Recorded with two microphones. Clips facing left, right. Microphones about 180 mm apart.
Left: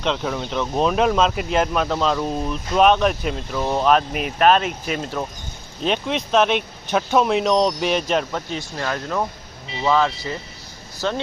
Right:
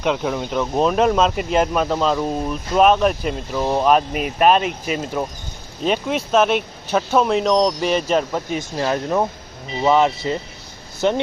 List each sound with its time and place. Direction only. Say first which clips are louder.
0.0 s speech: right 3 dB; 10° right (ahead or behind)
8.8 s speech: right 5 dB; 25° right (ahead or behind)